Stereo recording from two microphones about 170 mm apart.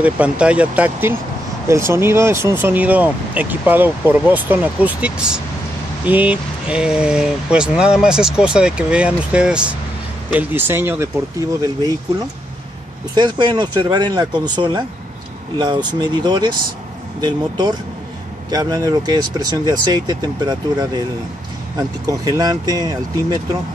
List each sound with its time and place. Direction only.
0.0 s speech: 5° right (ahead or behind); by 22.9 s 25° right (ahead or behind)